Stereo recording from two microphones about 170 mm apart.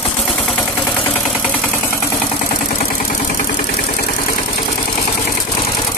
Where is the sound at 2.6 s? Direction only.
50° left (ahead or behind).